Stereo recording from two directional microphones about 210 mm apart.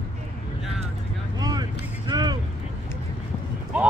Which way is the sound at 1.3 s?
20° right (ahead or behind).